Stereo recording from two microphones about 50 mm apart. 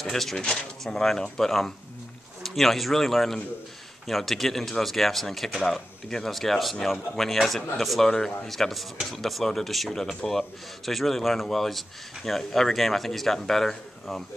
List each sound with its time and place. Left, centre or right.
0.0 s speech: centre
0.4 s speech: centre